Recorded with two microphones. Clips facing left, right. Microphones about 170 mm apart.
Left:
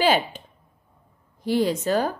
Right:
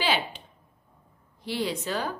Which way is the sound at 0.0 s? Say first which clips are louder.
Left 7 dB; 45° left (ahead or behind).